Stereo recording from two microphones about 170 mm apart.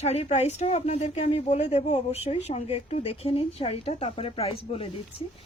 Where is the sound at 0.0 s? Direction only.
40° left (ahead or behind).